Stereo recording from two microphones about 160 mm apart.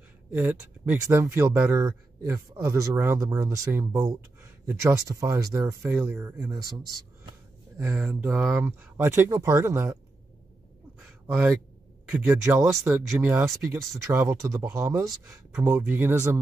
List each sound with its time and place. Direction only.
0.3 s speech: 10° right (ahead or behind)
7.8 s speech: 10° right (ahead or behind)
12.1 s speech: 15° right (ahead or behind)
12.9 s speech: 5° right (ahead or behind)